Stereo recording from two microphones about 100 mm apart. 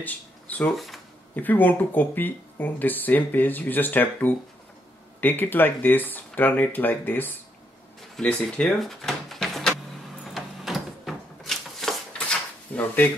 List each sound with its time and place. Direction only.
0.0 s speech: 15° left (ahead or behind)
0.7 s speech: centre (ahead or behind)
1.3 s speech: 15° left (ahead or behind)
10.2 s a sound: centre (ahead or behind); by 13.1 s 15° left (ahead or behind)